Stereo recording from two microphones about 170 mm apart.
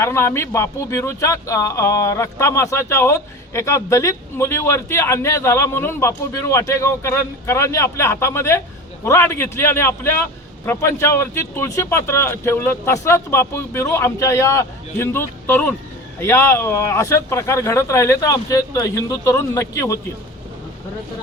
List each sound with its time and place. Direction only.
0.0 s speech: 15° left (ahead or behind)